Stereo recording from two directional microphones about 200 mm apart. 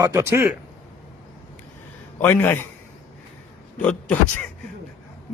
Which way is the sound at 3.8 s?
5° left (ahead or behind).